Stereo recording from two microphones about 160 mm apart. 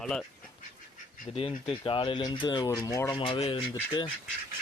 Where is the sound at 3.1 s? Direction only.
30° left (ahead or behind).